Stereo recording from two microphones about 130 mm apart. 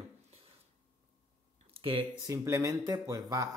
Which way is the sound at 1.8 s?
45° right (ahead or behind).